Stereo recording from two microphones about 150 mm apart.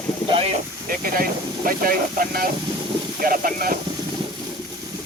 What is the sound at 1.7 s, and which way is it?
Speech, 75° right (ahead or behind).